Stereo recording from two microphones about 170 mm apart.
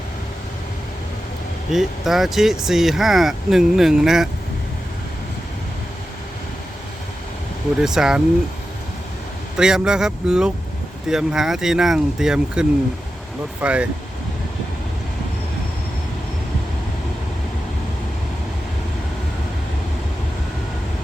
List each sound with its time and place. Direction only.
1.7 s speech: centre (ahead or behind)
7.8 s speech: 5° right (ahead or behind)
9.6 s speech: 5° right (ahead or behind)